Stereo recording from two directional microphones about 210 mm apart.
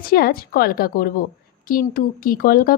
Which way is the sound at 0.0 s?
45° left (ahead or behind).